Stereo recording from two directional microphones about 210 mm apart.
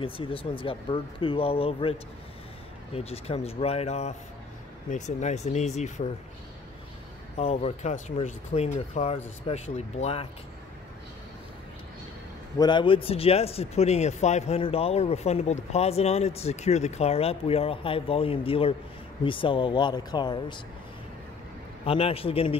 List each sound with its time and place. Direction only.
0.0 s speech: 25° left (ahead or behind)
7.3 s speech: 30° left (ahead or behind)
12.5 s speech: 20° left (ahead or behind)
21.8 s speech: 25° left (ahead or behind)